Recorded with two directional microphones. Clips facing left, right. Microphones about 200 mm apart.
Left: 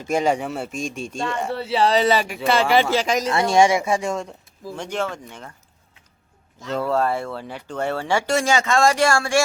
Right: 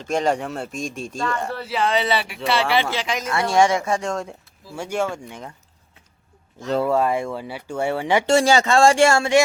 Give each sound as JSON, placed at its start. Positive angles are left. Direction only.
{"t": 0.0, "sound": "speech", "side_deg": 5}
{"t": 1.5, "sound": "speech", "side_deg": 30}
{"t": 3.2, "sound": "speech", "side_deg": 20}
{"t": 4.8, "sound": "speech", "side_deg": -10}
{"t": 6.8, "sound": "speech", "side_deg": -10}
{"t": 8.4, "sound": "speech", "side_deg": -30}